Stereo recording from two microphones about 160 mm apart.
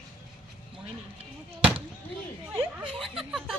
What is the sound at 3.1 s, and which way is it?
Speech, centre (ahead or behind).